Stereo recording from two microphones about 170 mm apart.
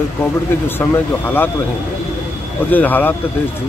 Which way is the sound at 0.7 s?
10° left (ahead or behind).